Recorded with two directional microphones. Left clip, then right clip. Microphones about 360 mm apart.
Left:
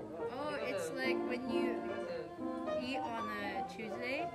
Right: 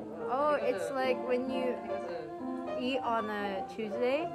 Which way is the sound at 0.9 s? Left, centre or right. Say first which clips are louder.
Right 6 dB; centre.